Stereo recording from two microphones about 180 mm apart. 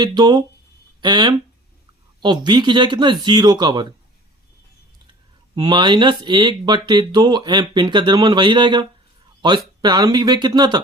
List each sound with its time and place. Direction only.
0.0 s speech: 25° right (ahead or behind)
5.5 s speech: 25° right (ahead or behind)